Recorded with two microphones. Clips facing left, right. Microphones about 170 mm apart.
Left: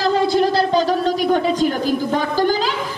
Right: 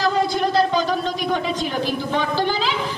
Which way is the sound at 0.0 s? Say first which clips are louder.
Left 4 dB; 35° left (ahead or behind).